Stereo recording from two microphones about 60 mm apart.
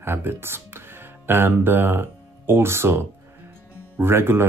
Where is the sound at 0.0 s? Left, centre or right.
Right.